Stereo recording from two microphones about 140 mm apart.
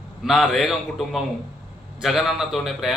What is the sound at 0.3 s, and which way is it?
A man's voice, centre (ahead or behind).